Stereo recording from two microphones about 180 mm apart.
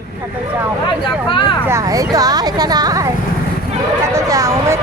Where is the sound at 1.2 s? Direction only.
30° left (ahead or behind).